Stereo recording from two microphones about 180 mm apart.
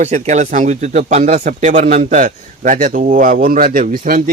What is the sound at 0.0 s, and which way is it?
Speech, 40° right (ahead or behind).